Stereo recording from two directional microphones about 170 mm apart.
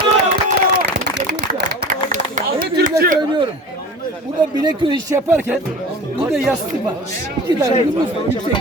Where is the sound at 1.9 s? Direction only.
50° right (ahead or behind).